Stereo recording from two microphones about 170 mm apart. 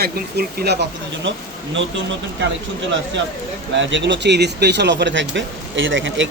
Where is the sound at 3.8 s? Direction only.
90° right.